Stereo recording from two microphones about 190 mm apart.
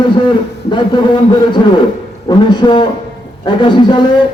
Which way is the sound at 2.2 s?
25° left (ahead or behind).